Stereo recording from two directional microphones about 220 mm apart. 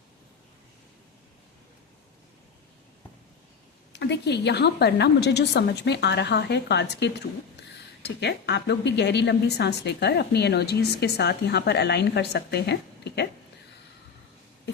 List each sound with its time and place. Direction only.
3.9 s a woman's voice: 50° left (ahead or behind)